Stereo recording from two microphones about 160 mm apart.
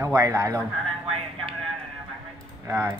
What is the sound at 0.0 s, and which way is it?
Speech, 20° right (ahead or behind).